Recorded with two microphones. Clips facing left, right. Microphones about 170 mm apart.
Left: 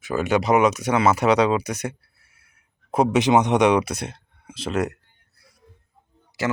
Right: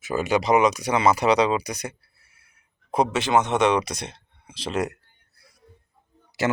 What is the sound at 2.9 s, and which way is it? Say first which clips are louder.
Speech: left 3 dB; 10° left (ahead or behind).